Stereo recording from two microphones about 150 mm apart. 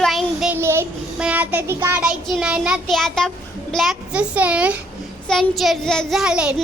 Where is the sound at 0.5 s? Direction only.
15° right (ahead or behind).